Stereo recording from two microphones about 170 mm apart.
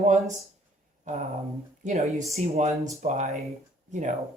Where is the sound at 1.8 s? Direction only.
45° right (ahead or behind).